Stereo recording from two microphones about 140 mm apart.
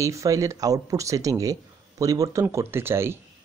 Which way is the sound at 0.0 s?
25° right (ahead or behind).